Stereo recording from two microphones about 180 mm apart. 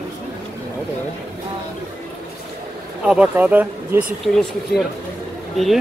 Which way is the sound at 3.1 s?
5° right (ahead or behind).